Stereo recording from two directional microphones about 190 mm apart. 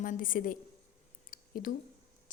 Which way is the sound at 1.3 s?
45° left (ahead or behind).